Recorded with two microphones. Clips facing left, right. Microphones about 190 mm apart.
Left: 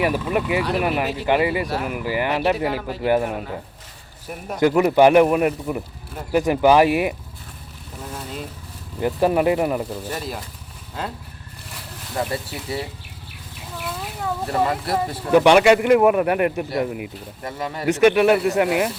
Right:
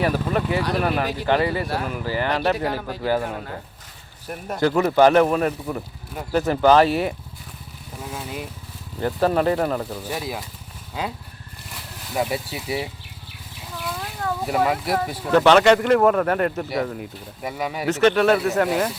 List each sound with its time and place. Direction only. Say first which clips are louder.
0.0 s speech: left 1 dB; 10° left (ahead or behind)
3.0 s a man's voice: left 4 dB; 20° left (ahead or behind)
3.2 s speech: left 3 dB; 5° left (ahead or behind)
8.1 s vehicle: even; 5° right (ahead or behind)
9.0 s speech: left 2 dB; 10° left (ahead or behind)
11.7 s speech: right 1 dB; 5° right (ahead or behind)
13.7 s a sound: even; 5° left (ahead or behind)
14.4 s speech: right 1 dB; 5° right (ahead or behind)
15.3 s speech: left 1 dB; 10° left (ahead or behind)
17.4 s speech: right 2 dB; 5° right (ahead or behind)
17.8 s speech: left 2 dB; 10° left (ahead or behind)